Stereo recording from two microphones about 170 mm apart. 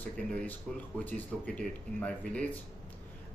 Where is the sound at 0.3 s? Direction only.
10° left (ahead or behind).